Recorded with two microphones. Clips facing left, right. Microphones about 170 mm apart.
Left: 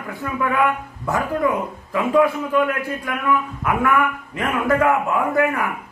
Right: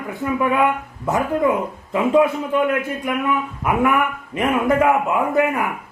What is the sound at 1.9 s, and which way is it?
Speech, 25° right (ahead or behind).